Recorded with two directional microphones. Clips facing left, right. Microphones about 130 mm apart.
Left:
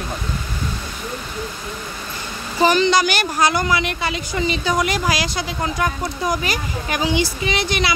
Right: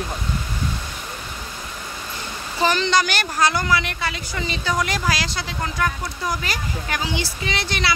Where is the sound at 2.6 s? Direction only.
10° left (ahead or behind).